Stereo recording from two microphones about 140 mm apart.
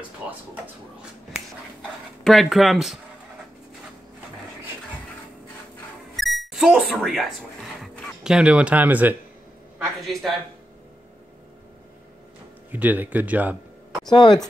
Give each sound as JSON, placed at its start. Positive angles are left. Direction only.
{"t": 0.2, "sound": "speech", "side_deg": -10}
{"t": 1.8, "sound": "speech", "side_deg": 0}
{"t": 6.1, "sound": "music", "side_deg": 0}
{"t": 8.2, "sound": "speech", "side_deg": -5}
{"t": 10.0, "sound": "speech", "side_deg": 0}
{"t": 12.7, "sound": "speech", "side_deg": -10}
{"t": 14.1, "sound": "speech", "side_deg": 30}